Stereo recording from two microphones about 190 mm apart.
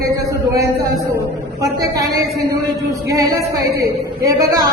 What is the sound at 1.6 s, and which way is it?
Speech, 15° right (ahead or behind).